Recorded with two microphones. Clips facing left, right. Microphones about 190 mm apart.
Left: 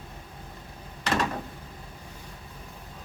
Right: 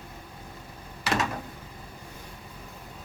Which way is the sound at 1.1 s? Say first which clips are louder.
Left 1 dB; 5° right (ahead or behind).